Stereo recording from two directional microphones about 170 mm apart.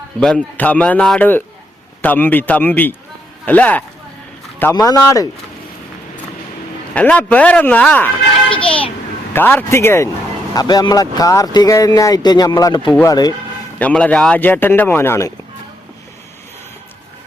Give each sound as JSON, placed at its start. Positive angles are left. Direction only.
{"t": 0.2, "sound": "speech", "side_deg": 5}
{"t": 4.9, "sound": "speech", "side_deg": 20}
{"t": 6.9, "sound": "speech", "side_deg": 10}
{"t": 8.4, "sound": "a sound", "side_deg": 30}
{"t": 9.3, "sound": "speech", "side_deg": 10}
{"t": 13.7, "sound": "speech", "side_deg": 10}